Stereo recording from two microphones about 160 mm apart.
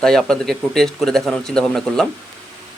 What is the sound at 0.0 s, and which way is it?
A man's voice, 5° left (ahead or behind).